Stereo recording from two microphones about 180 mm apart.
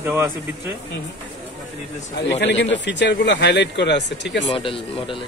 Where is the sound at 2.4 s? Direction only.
75° left (ahead or behind).